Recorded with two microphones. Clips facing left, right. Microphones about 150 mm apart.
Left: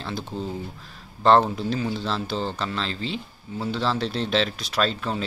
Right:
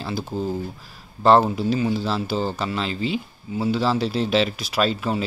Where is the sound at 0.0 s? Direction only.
5° right (ahead or behind).